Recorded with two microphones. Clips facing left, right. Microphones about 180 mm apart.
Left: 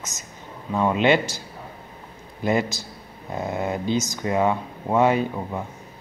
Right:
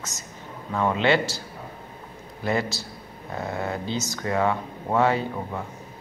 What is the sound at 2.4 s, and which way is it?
Speech, 20° left (ahead or behind).